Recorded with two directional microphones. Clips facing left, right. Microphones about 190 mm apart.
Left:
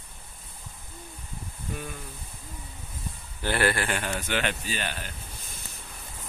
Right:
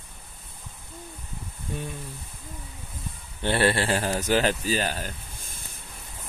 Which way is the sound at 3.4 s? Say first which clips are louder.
Right 3 dB; 25° right (ahead or behind).